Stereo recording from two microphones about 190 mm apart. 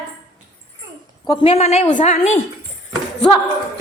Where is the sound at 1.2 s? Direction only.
25° left (ahead or behind).